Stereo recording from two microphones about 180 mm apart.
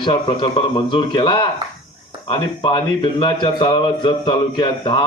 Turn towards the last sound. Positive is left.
turn(degrees=25)  # may be behind; listen again after turning